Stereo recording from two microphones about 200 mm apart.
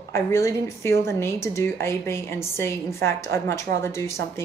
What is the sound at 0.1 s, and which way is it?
Speech, 15° left (ahead or behind).